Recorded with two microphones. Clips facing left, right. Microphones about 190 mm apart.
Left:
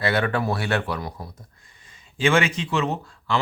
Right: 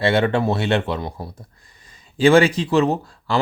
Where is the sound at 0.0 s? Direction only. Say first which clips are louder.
Right 5 dB; 25° right (ahead or behind).